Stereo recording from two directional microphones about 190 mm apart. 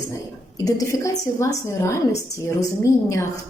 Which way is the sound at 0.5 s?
15° left (ahead or behind).